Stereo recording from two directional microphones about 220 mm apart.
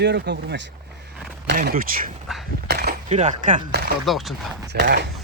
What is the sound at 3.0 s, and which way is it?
Speech, 30° right (ahead or behind).